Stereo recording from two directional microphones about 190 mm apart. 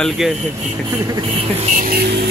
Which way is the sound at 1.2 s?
40° right (ahead or behind).